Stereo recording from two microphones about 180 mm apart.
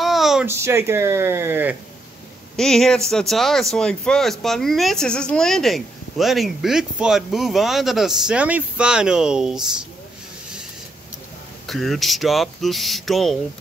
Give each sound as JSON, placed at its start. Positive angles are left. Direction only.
{"t": 0.0, "sound": "a sound", "side_deg": 0}
{"t": 0.5, "sound": "speech", "side_deg": -15}
{"t": 2.5, "sound": "speech", "side_deg": 5}
{"t": 11.6, "sound": "speech", "side_deg": 0}